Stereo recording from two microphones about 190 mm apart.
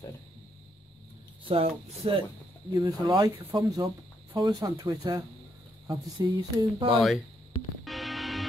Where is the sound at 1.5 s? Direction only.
30° right (ahead or behind).